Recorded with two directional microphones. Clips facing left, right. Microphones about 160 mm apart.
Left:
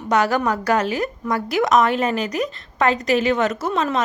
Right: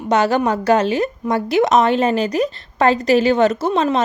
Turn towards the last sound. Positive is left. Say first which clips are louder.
# right 4 dB
turn(degrees=-30)  # may be behind; listen again after turning